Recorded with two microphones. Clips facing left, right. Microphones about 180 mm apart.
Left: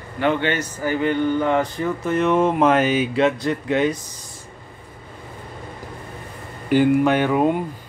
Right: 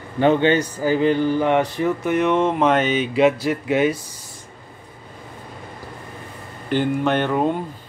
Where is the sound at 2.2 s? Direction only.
5° left (ahead or behind).